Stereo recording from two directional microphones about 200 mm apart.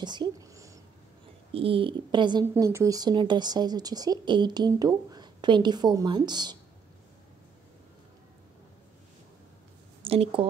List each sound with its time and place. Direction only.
0.0 s speech: 20° right (ahead or behind)
1.5 s speech: 30° right (ahead or behind)
2.4 s speech: 10° right (ahead or behind)
10.0 s speech: 30° right (ahead or behind)